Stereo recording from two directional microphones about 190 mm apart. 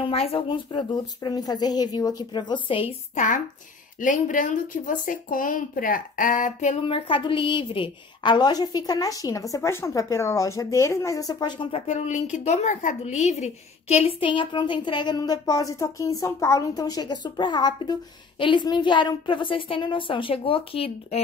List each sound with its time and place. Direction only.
0.0 s speech: 30° left (ahead or behind)
11.9 s speech: 40° left (ahead or behind)